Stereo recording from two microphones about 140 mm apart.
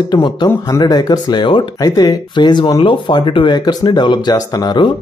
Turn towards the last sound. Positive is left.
turn(degrees=30)  # may be behind; listen again after turning